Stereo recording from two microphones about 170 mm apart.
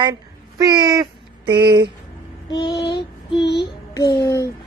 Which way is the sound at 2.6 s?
85° left.